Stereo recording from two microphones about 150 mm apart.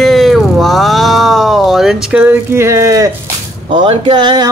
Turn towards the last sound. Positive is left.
turn(degrees=-30)  # may be behind; listen again after turning